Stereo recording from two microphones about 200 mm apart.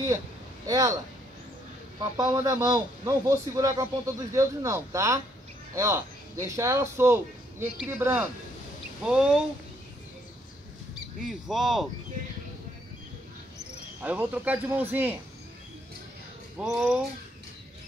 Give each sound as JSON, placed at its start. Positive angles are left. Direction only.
{"t": 0.7, "sound": "a man's voice", "side_deg": -15}
{"t": 2.0, "sound": "a man's voice", "side_deg": -15}
{"t": 11.2, "sound": "speech", "side_deg": 0}
{"t": 14.0, "sound": "a man's voice", "side_deg": -10}
{"t": 16.5, "sound": "speech", "side_deg": 0}